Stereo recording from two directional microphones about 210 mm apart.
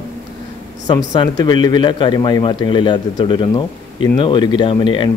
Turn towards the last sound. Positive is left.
turn(degrees=25)  # may be behind; listen again after turning